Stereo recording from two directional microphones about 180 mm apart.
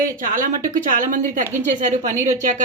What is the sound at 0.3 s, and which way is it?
Speech, 50° right (ahead or behind).